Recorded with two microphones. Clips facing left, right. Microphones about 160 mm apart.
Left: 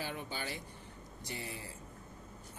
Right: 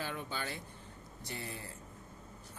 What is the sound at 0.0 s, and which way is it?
Speech, 15° left (ahead or behind).